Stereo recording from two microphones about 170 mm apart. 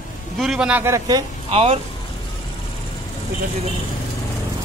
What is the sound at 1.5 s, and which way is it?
Speech, 35° right (ahead or behind).